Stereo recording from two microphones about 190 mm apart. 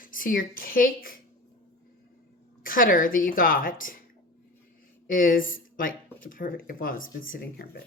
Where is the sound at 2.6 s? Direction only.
45° left (ahead or behind).